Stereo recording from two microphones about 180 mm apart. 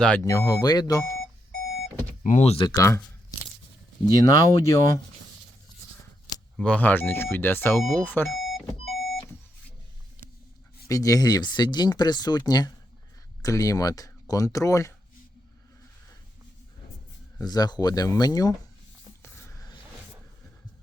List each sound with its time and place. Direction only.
0.0 s speech: 10° left (ahead or behind)
2.2 s speech: 40° left (ahead or behind)
2.7 s speech: 15° left (ahead or behind)
4.1 s speech: 20° left (ahead or behind)
6.6 s speech: 10° left (ahead or behind)
8.4 s a sound: centre (ahead or behind)
10.8 s speech: 20° left (ahead or behind)
17.3 s speech: 20° left (ahead or behind)